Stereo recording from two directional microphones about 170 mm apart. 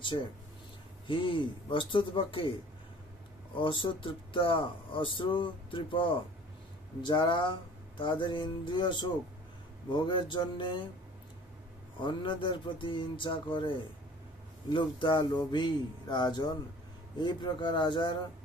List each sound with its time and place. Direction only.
0.1 s speech: 25° left (ahead or behind)
3.5 s speech: 30° left (ahead or behind)
12.0 s speech: 30° left (ahead or behind)